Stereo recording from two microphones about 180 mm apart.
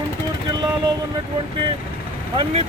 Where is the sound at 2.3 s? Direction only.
35° right (ahead or behind).